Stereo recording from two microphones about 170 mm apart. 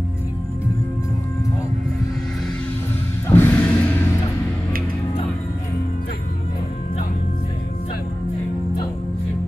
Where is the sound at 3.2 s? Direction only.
15° left (ahead or behind).